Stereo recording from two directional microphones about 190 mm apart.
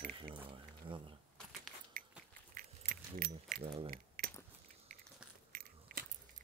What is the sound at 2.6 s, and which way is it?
Keys jangling, 50° right (ahead or behind).